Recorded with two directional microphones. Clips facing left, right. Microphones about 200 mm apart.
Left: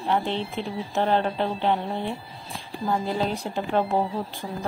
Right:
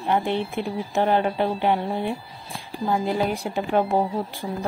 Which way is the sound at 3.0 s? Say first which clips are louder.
Right 4 dB; 10° right (ahead or behind).